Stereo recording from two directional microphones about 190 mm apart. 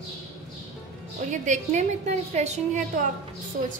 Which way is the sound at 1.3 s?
40° right (ahead or behind).